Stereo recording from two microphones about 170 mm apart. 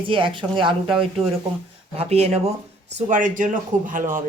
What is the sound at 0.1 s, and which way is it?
Speech, 30° right (ahead or behind).